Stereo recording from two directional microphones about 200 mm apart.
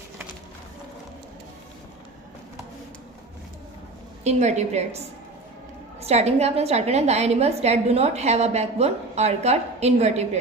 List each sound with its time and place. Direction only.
4.2 s a woman's voice: 35° right (ahead or behind)
6.0 s a woman's voice: 30° right (ahead or behind)